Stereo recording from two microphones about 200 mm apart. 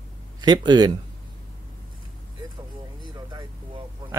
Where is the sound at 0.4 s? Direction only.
20° right (ahead or behind).